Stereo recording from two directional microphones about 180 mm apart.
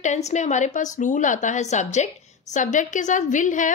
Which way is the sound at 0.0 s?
40° left (ahead or behind).